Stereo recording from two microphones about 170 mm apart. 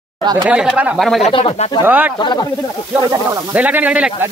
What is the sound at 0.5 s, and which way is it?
Speech, 5° right (ahead or behind).